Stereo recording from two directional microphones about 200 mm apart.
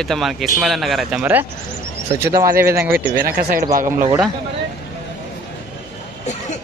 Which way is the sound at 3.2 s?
45° right (ahead or behind).